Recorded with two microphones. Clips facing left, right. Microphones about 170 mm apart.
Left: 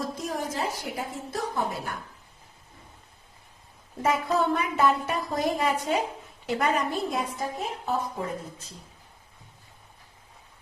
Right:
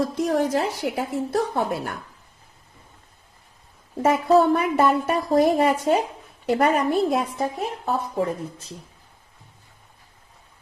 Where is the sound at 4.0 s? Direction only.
45° right (ahead or behind).